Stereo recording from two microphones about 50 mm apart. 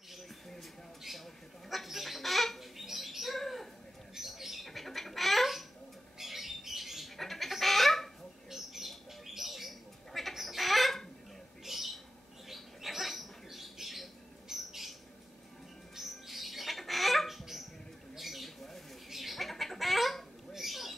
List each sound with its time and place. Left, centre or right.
1.0 s fowl: centre
4.1 s bird: centre
12.4 s a sound: centre
14.5 s bird: centre
16.0 s bird: centre
18.1 s a sound: centre
19.0 s bird: centre